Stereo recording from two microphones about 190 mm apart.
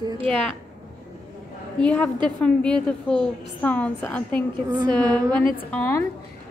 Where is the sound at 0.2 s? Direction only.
5° left (ahead or behind).